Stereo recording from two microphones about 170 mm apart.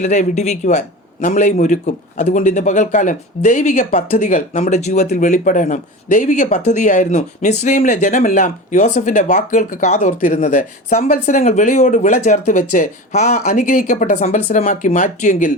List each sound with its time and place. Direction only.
0.0 s a man's voice: 45° left (ahead or behind)